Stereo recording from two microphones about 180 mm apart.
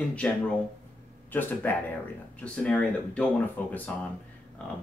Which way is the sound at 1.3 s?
10° left (ahead or behind).